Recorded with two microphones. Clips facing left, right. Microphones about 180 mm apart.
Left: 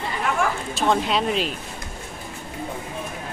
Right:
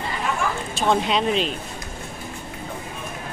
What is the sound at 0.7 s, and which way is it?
Speech, centre (ahead or behind).